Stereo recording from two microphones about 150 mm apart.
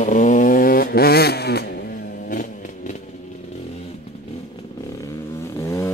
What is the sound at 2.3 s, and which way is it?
Vehicle, 60° left (ahead or behind).